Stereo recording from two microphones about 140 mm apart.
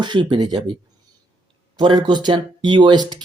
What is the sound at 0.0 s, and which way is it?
Speech, 35° right (ahead or behind).